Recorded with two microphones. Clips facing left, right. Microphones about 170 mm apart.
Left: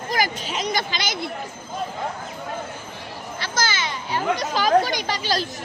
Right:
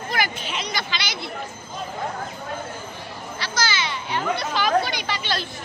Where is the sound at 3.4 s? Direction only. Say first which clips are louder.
Even; 50° left (ahead or behind).